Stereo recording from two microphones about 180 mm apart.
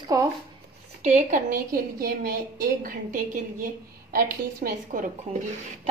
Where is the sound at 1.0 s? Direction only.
45° right (ahead or behind).